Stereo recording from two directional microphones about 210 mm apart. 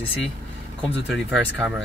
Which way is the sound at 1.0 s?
Centre (ahead or behind).